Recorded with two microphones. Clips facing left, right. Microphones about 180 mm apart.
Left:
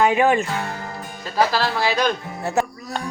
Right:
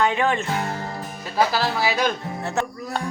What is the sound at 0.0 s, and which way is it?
Speech, 10° left (ahead or behind).